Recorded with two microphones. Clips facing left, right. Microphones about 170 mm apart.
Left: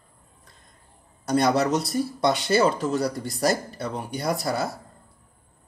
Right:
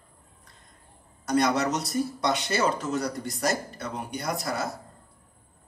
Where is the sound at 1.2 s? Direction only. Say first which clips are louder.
Left 3 dB; 30° left (ahead or behind).